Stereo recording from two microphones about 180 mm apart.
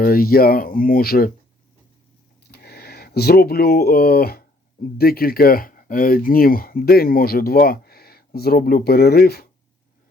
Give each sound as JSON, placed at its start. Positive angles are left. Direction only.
{"t": 0.0, "sound": "speech", "side_deg": 55}
{"t": 2.5, "sound": "speech", "side_deg": 60}